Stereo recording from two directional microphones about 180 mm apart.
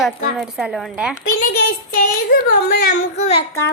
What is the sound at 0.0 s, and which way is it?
A woman's voice, centre (ahead or behind).